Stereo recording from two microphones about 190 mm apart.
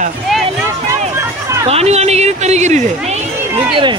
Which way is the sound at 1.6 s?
35° right (ahead or behind).